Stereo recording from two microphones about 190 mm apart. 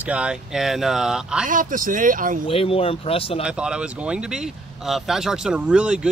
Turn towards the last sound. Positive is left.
turn(degrees=-5)  # may be behind; listen again after turning